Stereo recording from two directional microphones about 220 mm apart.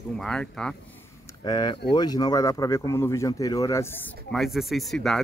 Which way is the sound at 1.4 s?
20° left (ahead or behind).